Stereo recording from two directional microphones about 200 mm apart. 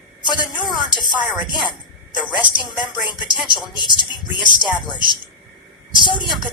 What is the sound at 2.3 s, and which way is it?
A woman's voice, 20° left (ahead or behind).